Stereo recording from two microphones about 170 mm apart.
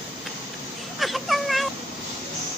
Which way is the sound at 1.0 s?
Centre (ahead or behind).